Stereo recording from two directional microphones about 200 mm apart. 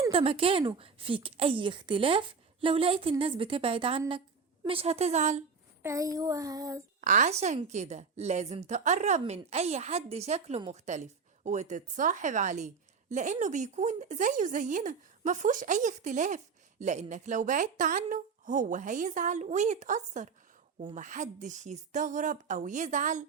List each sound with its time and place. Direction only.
0.1 s a woman's voice: 30° right (ahead or behind)
5.8 s child singing: 15° right (ahead or behind)
7.0 s speech: 40° right (ahead or behind)